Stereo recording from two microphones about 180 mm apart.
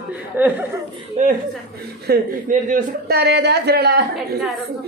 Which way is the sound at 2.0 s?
55° right (ahead or behind).